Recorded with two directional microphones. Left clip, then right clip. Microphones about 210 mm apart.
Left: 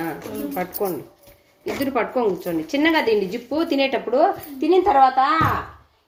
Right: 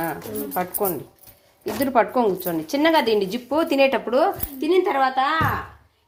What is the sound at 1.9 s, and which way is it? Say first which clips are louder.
Speech: right 3 dB; 50° right (ahead or behind).